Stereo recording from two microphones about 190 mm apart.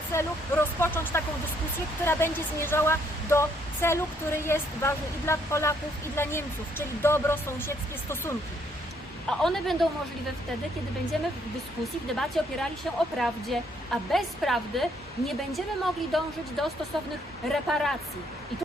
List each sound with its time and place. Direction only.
0.1 s speech: 15° left (ahead or behind)
9.4 s a woman's voice: centre (ahead or behind)
11.1 s a woman's voice: centre (ahead or behind)